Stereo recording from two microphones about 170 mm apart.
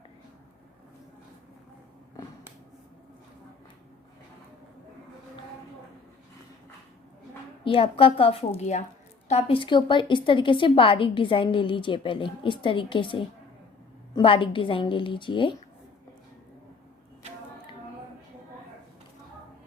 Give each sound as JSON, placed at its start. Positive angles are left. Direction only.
{"t": 7.6, "sound": "a woman's voice", "side_deg": 30}